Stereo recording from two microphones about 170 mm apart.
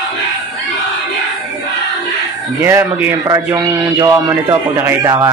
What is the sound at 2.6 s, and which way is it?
A man's voice, 15° right (ahead or behind).